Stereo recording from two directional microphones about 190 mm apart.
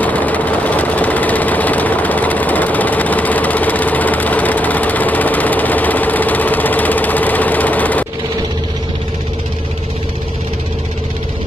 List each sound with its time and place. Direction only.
0.0 s engine: 10° left (ahead or behind)